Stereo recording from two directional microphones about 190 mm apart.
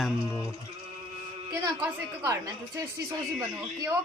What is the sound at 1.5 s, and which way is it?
Speech, 15° right (ahead or behind).